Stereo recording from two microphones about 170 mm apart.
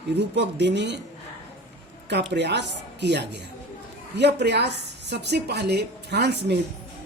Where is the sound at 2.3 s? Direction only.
90° right.